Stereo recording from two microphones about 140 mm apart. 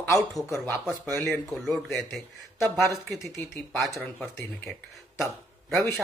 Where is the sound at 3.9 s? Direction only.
15° left (ahead or behind).